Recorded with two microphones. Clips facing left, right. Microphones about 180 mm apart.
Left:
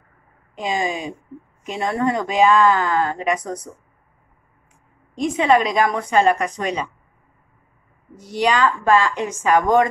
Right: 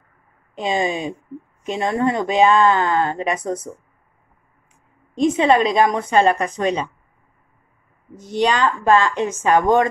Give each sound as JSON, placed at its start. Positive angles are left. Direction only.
{"t": 0.6, "sound": "speech", "side_deg": -25}
{"t": 5.1, "sound": "speech", "side_deg": -25}
{"t": 8.3, "sound": "speech", "side_deg": -25}